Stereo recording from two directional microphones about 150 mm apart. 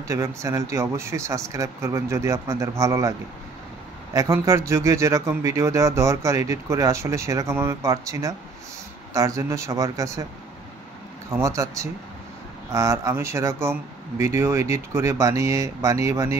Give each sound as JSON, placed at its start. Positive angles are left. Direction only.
{"t": 0.1, "sound": "speech", "side_deg": -20}
{"t": 11.2, "sound": "speech", "side_deg": -20}